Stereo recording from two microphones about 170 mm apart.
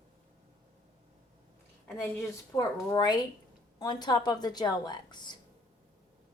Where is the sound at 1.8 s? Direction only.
15° left (ahead or behind).